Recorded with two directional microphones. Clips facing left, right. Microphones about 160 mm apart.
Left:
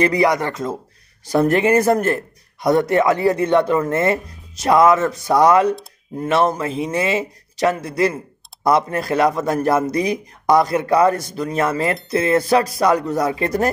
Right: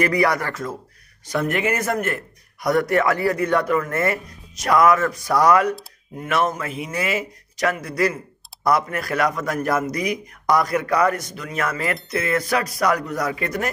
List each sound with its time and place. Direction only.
0.0 s speech: 20° left (ahead or behind)
1.3 s speech: 35° left (ahead or behind)